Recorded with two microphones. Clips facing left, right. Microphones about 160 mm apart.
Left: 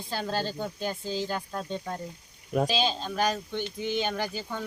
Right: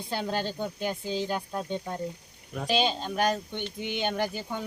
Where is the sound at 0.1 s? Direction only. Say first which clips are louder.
Even; 15° right (ahead or behind).